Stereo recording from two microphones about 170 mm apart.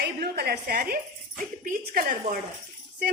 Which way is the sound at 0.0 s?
70° right (ahead or behind).